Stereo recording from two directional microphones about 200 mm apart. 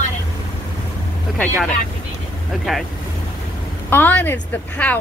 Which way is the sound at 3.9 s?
10° left (ahead or behind).